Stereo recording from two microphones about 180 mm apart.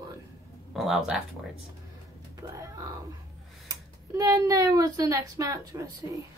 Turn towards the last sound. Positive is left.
turn(degrees=-20)  # may be behind; listen again after turning